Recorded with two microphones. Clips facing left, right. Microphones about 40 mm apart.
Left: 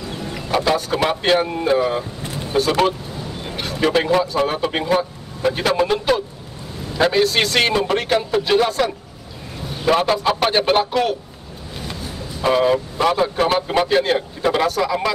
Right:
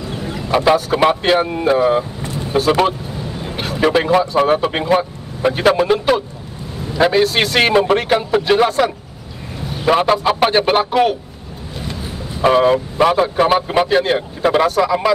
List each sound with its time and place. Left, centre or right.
0.1 s chicken: centre
0.7 s speech: centre
5.8 s a man's voice: centre